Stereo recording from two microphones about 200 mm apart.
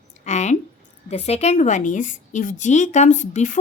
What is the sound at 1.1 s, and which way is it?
A woman's voice, 30° left (ahead or behind).